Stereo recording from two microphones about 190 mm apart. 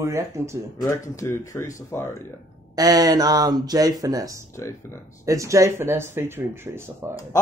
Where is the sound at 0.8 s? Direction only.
15° left (ahead or behind).